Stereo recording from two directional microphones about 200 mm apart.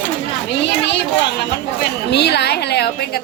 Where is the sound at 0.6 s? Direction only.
60° left (ahead or behind).